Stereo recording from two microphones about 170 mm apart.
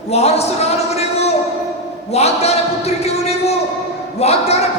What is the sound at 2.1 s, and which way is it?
A man's voice, 40° left (ahead or behind).